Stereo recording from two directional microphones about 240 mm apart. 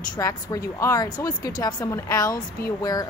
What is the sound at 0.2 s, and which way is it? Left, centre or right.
A woman's voice, centre.